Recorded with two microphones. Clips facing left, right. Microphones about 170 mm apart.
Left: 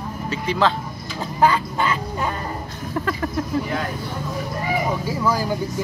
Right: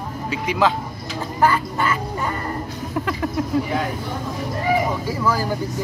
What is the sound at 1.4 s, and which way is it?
Quack, 10° left (ahead or behind).